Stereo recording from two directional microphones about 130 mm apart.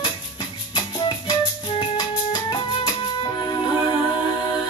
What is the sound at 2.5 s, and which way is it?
Music, 35° left (ahead or behind).